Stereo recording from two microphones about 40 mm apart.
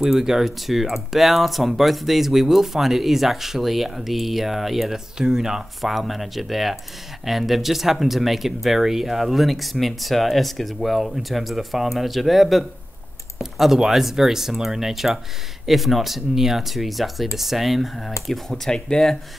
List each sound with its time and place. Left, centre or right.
0.0 s speech: centre
5.8 s speech: centre
18.7 s speech: centre